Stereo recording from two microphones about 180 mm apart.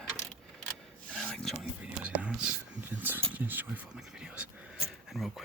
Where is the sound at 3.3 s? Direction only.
10° right (ahead or behind).